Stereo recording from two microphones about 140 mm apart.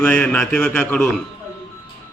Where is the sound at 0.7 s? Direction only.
20° left (ahead or behind).